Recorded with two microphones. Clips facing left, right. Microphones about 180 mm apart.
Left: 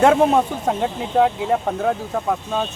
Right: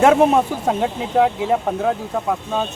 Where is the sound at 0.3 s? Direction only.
5° right (ahead or behind).